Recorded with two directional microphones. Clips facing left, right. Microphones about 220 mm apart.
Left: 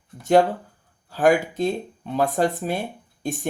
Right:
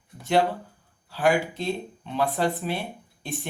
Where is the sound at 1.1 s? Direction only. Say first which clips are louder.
Left 4 dB; 45° left (ahead or behind).